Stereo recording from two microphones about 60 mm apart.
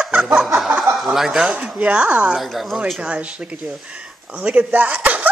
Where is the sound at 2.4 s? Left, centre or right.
Centre.